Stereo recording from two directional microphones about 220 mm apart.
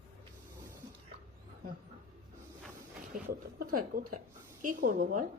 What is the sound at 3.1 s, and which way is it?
A woman's voice, 40° right (ahead or behind).